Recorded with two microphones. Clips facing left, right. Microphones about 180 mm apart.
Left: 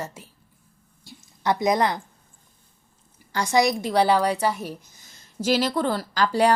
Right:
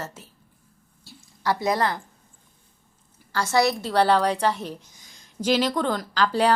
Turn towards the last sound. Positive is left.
turn(degrees=10)  # may be behind; listen again after turning